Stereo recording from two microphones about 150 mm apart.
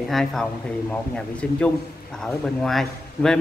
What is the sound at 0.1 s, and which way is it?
Speech, centre (ahead or behind).